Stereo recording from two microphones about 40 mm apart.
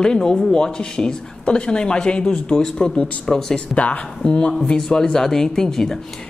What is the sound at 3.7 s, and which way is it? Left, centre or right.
Speech, left.